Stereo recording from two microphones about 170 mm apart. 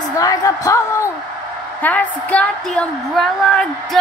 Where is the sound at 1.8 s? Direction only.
10° left (ahead or behind).